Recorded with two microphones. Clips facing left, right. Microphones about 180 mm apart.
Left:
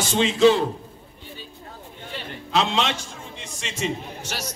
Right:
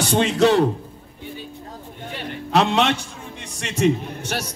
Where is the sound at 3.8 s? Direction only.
60° right (ahead or behind).